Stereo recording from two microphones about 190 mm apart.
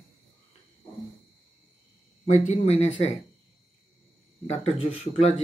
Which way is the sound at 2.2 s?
35° left (ahead or behind).